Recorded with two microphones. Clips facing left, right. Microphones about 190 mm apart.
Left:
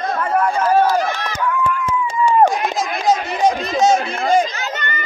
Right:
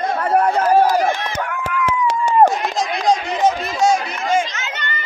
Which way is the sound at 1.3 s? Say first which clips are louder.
Left 3 dB; 75° right (ahead or behind).